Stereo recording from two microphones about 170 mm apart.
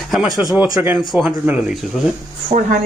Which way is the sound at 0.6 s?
10° right (ahead or behind).